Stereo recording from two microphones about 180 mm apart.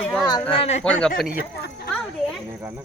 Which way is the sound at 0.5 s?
35° left (ahead or behind).